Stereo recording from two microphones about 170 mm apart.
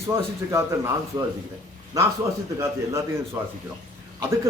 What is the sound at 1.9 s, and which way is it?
A man's voice, 20° right (ahead or behind).